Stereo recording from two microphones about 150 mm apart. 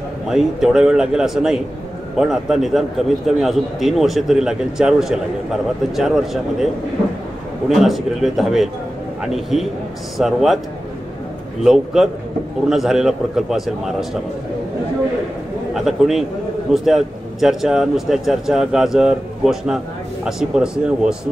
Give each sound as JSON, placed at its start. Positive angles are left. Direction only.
{"t": 0.3, "sound": "a man's voice", "side_deg": -5}
{"t": 7.7, "sound": "a man's voice", "side_deg": 0}
{"t": 11.6, "sound": "a man's voice", "side_deg": 0}
{"t": 15.7, "sound": "a man's voice", "side_deg": 0}